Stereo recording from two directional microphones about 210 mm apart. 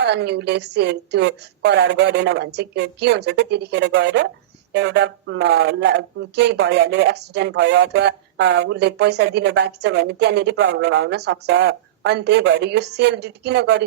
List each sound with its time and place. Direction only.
0.0 s speech: 55° right (ahead or behind)